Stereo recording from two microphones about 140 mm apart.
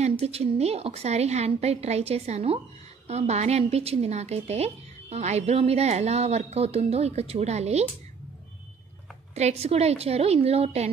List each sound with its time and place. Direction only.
0.2 s a woman's voice: 45° right (ahead or behind)
9.3 s a woman's voice: 50° right (ahead or behind)